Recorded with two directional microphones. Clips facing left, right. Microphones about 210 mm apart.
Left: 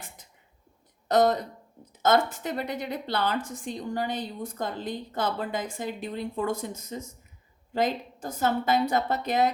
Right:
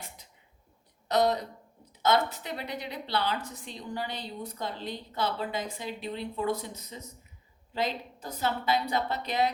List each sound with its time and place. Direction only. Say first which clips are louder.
1.0 s a woman's voice: left 4 dB; 50° left (ahead or behind)